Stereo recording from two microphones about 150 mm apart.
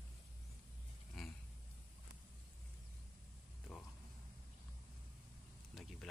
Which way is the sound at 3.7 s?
Centre (ahead or behind).